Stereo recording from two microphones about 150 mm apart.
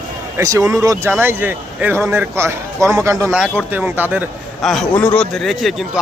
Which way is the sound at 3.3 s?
10° right (ahead or behind).